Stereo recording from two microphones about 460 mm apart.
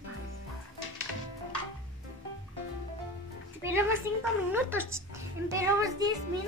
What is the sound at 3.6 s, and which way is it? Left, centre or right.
A woman's voice, centre.